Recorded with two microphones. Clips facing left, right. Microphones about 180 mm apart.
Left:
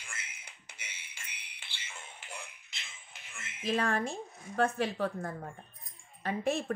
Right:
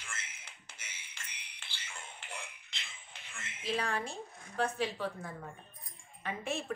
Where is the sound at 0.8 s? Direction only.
10° left (ahead or behind).